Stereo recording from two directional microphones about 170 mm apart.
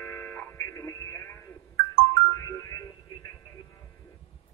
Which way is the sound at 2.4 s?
20° left (ahead or behind).